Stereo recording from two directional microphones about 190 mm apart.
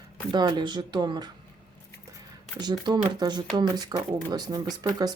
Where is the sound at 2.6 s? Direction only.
20° right (ahead or behind).